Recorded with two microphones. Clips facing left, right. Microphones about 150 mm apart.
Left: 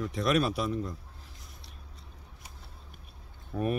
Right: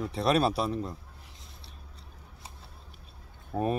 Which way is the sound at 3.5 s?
55° right (ahead or behind).